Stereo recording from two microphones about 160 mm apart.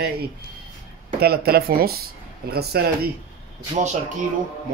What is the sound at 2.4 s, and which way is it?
Speech, 85° right.